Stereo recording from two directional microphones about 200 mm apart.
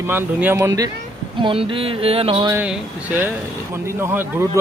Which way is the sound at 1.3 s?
25° right (ahead or behind).